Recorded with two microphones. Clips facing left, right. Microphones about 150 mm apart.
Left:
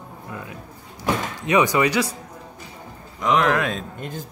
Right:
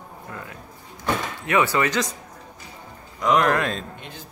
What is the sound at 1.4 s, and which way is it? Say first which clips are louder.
Speech: left 3 dB; 15° left (ahead or behind).